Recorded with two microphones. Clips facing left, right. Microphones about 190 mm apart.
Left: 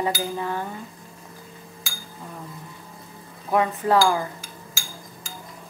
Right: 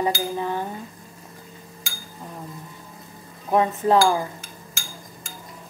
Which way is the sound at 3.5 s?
20° right (ahead or behind).